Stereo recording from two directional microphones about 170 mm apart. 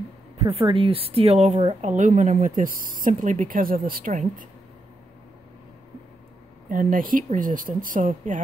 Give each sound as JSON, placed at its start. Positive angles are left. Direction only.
{"t": 0.4, "sound": "a woman's voice", "side_deg": -35}
{"t": 6.7, "sound": "a woman's voice", "side_deg": -55}